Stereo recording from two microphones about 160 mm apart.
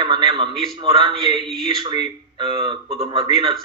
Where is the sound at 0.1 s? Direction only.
30° right (ahead or behind).